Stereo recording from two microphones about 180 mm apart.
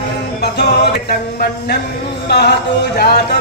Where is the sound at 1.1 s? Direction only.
55° left (ahead or behind).